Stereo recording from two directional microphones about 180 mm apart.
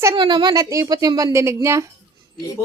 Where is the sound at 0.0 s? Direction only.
20° right (ahead or behind).